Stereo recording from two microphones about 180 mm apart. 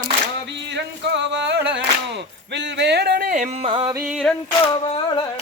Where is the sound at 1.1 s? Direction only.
80° right; by 3.7 s 45° right (ahead or behind).